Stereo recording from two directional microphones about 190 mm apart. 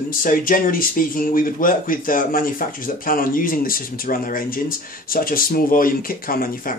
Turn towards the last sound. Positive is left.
turn(degrees=50)  # may be behind; listen again after turning